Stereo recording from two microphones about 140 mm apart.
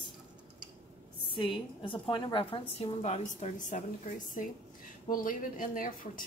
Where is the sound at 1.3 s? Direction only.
35° left (ahead or behind); by 4.4 s 60° left (ahead or behind).